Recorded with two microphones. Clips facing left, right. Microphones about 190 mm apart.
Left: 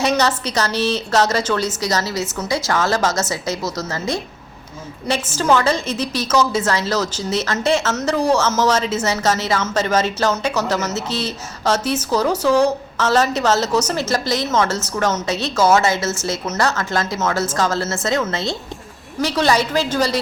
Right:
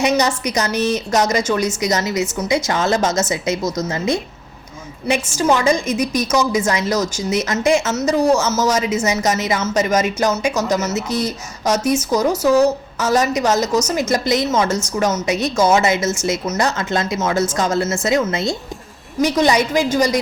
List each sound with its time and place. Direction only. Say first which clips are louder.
0.0 s a woman's voice: right 1 dB; 15° right (ahead or behind)
5.4 s a woman's voice: right 1 dB; 10° right (ahead or behind)
19.2 s a woman's voice: right 2 dB; 15° right (ahead or behind)